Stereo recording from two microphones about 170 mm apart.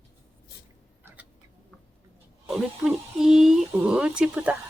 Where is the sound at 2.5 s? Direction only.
5° right (ahead or behind).